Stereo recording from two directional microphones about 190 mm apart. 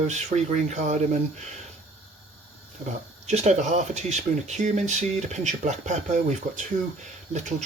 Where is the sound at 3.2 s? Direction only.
35° right (ahead or behind).